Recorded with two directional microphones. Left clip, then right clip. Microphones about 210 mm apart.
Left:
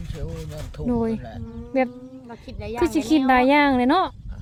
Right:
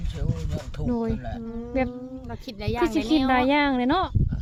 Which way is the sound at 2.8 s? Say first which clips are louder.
Left 2 dB; 10° left (ahead or behind).